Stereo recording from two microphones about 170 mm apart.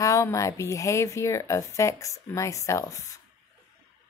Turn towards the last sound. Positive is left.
turn(degrees=15)  # may be behind; listen again after turning